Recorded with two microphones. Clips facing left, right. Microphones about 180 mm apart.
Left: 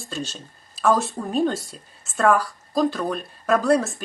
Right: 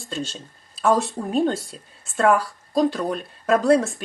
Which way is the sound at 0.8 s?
35° right (ahead or behind).